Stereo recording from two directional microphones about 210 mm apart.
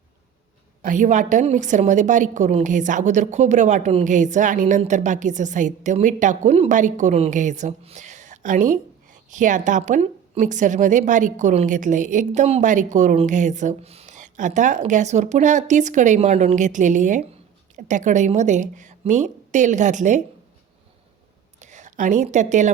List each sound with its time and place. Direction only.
0.8 s a woman's voice: 35° right (ahead or behind)
21.6 s a woman's voice: 35° right (ahead or behind)